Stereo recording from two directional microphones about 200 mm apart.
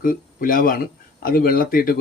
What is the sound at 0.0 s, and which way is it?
A man's voice, 45° left (ahead or behind).